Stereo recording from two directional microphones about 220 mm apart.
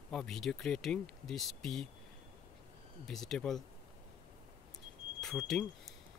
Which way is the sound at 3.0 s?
Centre (ahead or behind).